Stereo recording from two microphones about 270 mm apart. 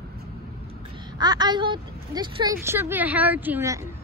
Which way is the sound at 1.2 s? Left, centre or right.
Centre.